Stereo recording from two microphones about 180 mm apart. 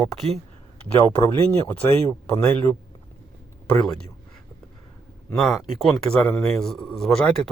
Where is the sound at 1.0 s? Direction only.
20° left (ahead or behind).